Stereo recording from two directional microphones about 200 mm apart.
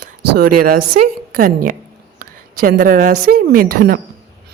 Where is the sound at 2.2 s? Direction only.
45° right (ahead or behind).